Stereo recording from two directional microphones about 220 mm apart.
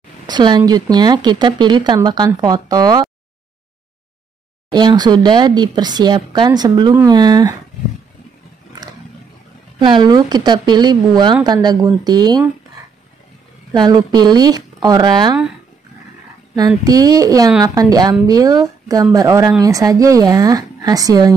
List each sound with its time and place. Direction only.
0.3 s speech: 20° right (ahead or behind)
4.7 s speech: 20° right (ahead or behind)
9.8 s speech: 20° right (ahead or behind)
13.7 s speech: 20° right (ahead or behind)
16.5 s speech: 15° right (ahead or behind)